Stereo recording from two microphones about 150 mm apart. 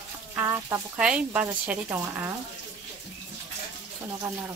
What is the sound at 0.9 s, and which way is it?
Speech, 5° right (ahead or behind).